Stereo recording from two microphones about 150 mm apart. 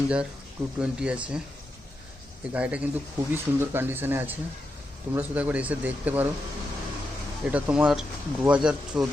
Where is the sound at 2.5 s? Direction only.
10° right (ahead or behind).